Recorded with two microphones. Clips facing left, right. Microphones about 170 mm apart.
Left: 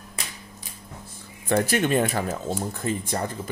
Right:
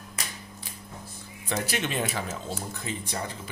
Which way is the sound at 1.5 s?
50° left (ahead or behind).